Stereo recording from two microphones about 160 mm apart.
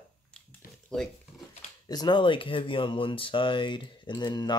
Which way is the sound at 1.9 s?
25° left (ahead or behind).